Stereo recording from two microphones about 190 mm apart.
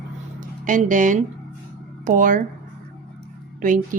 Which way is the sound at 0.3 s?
45° right (ahead or behind).